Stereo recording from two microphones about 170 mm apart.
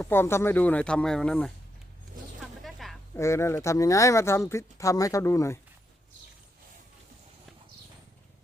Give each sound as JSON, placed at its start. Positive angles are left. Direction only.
{"t": 0.0, "sound": "speech", "side_deg": 15}
{"t": 2.6, "sound": "a sound", "side_deg": 0}
{"t": 3.2, "sound": "speech", "side_deg": 15}